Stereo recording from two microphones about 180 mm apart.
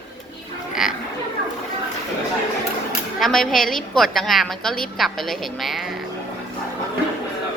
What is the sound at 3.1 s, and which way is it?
Speech, centre (ahead or behind).